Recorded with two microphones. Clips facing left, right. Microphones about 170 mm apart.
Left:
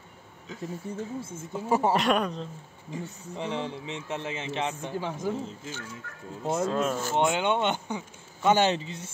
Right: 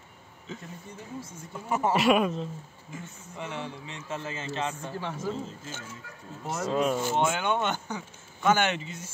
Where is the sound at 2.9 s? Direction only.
35° left (ahead or behind); by 5.7 s 15° left (ahead or behind).